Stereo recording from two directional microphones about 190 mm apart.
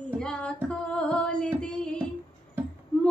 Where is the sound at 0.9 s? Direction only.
5° left (ahead or behind).